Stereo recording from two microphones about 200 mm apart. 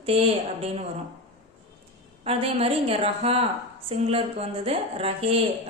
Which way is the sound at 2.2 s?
30° right (ahead or behind).